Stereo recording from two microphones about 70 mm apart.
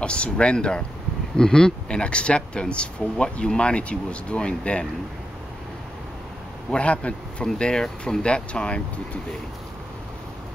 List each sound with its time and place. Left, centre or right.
0.0 s speech: centre
6.7 s speech: centre